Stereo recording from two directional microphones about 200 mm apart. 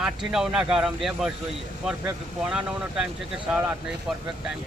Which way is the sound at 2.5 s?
5° right (ahead or behind).